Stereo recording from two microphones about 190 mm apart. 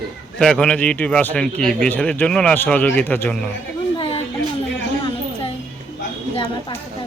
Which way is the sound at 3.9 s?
30° left (ahead or behind).